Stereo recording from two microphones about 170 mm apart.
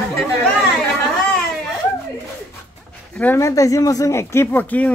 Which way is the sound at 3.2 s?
15° left (ahead or behind).